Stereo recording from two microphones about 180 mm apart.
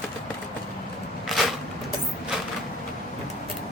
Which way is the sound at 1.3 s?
Centre (ahead or behind).